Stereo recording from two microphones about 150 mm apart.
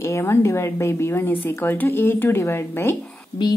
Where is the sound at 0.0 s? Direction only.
15° left (ahead or behind).